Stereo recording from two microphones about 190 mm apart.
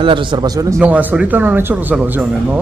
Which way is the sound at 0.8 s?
10° right (ahead or behind).